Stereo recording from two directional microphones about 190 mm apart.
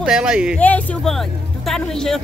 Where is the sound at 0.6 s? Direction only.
10° left (ahead or behind).